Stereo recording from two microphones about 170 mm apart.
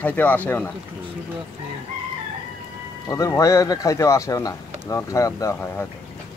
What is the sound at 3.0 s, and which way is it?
Speech, 20° left (ahead or behind).